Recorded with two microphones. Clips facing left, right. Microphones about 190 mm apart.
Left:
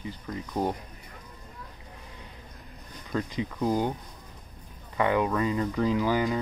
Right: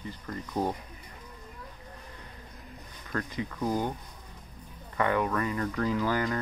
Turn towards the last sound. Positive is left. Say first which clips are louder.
# left 3 dB
turn(degrees=15)  # may be behind; listen again after turning